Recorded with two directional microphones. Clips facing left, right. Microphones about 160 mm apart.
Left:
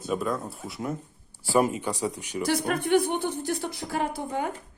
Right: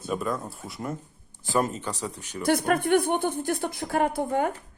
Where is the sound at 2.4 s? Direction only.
55° right (ahead or behind).